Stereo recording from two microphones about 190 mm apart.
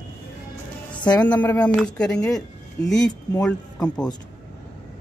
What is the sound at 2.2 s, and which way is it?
Speech, 20° left (ahead or behind).